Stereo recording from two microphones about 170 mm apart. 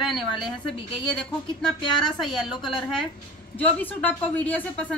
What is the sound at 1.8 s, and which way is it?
Speech, 25° left (ahead or behind).